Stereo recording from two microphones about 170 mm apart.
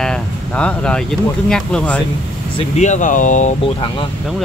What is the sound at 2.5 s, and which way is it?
Speech, 45° left (ahead or behind).